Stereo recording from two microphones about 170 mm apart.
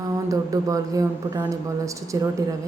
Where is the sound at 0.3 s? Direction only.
20° right (ahead or behind).